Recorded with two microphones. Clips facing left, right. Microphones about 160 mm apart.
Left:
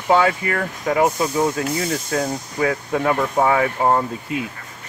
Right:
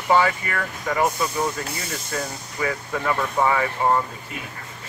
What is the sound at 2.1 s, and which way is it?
Speech, 50° left (ahead or behind).